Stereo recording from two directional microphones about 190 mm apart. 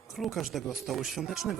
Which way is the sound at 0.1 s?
Centre (ahead or behind).